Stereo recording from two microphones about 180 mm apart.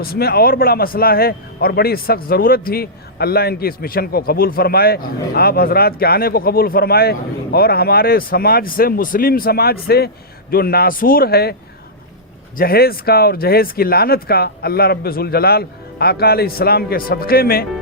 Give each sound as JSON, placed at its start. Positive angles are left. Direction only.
{"t": 0.0, "sound": "a man's voice", "side_deg": 60}
{"t": 12.5, "sound": "a man's voice", "side_deg": 55}